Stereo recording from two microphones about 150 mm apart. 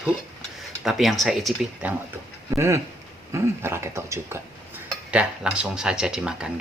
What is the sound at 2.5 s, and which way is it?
Speech, 20° right (ahead or behind).